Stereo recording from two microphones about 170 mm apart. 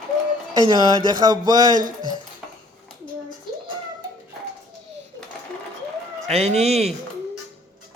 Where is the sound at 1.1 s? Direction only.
25° right (ahead or behind).